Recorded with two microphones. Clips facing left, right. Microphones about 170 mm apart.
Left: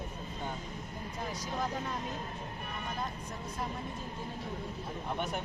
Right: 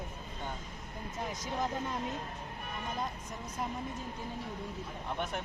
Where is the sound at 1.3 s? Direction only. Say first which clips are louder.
Right 1 dB; 20° right (ahead or behind).